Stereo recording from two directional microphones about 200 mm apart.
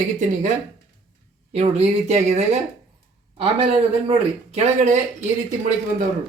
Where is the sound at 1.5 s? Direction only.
30° right (ahead or behind).